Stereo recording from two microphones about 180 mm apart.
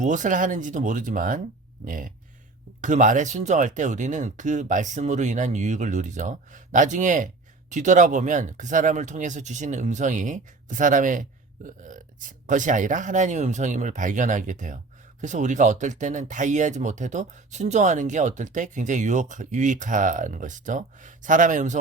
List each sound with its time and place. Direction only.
0.0 s speech: 45° right (ahead or behind)